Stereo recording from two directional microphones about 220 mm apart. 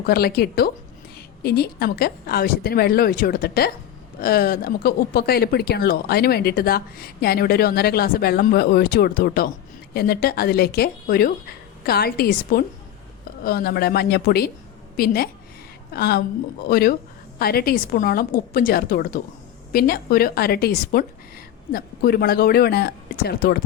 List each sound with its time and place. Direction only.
0.0 s a woman's voice: 45° left (ahead or behind)